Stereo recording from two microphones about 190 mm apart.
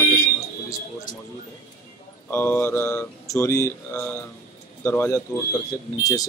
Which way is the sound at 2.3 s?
10° left (ahead or behind).